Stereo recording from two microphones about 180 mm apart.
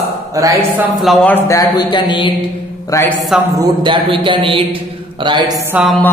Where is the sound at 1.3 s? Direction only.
15° left (ahead or behind).